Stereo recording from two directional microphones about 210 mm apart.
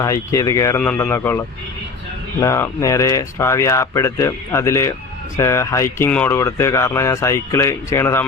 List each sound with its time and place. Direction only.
0.0 s speech: 15° left (ahead or behind)